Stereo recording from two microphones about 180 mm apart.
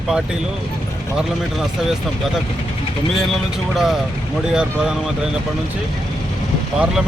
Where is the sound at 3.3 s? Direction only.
Centre (ahead or behind).